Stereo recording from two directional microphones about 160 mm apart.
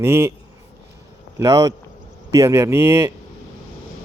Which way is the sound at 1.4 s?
20° right (ahead or behind).